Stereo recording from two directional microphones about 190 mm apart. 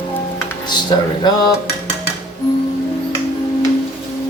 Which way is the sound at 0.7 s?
20° left (ahead or behind).